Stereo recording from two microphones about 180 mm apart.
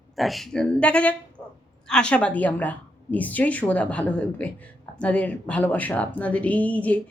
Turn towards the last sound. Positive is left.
turn(degrees=10)  # may be behind; listen again after turning